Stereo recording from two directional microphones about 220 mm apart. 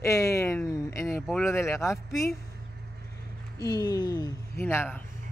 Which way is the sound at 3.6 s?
15° left (ahead or behind).